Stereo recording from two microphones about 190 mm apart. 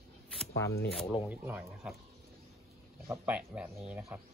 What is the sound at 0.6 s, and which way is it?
Speech, 15° left (ahead or behind).